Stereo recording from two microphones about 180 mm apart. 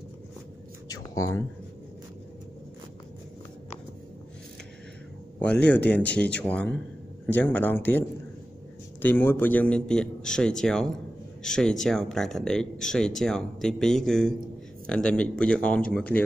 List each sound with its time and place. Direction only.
0.8 s a sound: 20° left (ahead or behind)
5.4 s speech: 5° left (ahead or behind)
9.0 s speech: 10° left (ahead or behind)